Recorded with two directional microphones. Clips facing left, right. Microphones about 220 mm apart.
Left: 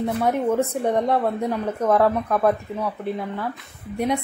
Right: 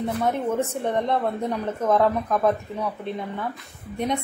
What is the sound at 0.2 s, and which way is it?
A woman's voice, 10° left (ahead or behind).